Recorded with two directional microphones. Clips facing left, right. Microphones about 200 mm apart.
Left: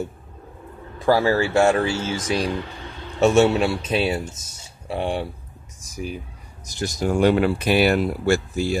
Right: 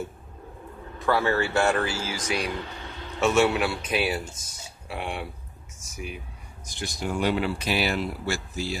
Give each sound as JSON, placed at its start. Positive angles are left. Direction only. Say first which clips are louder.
{"t": 1.0, "sound": "speech", "louder": "left 5 dB", "side_deg": 30}
{"t": 5.8, "sound": "a sound", "louder": "left 6 dB", "side_deg": 35}
{"t": 6.6, "sound": "speech", "louder": "left 7 dB", "side_deg": 40}